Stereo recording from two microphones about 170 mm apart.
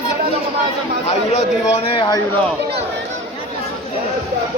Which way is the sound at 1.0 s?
40° left (ahead or behind).